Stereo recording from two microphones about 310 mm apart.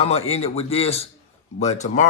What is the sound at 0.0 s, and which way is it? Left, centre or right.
Mantra, centre.